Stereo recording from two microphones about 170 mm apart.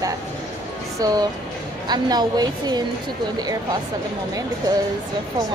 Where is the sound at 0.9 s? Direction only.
20° right (ahead or behind).